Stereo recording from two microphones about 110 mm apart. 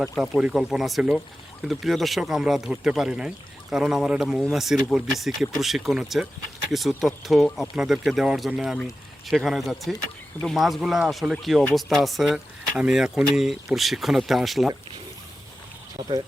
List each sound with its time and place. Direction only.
0.0 s speech: 5° right (ahead or behind)
16.0 s speech: 40° right (ahead or behind)